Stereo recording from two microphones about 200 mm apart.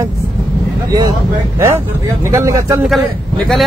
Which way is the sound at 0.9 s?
15° right (ahead or behind).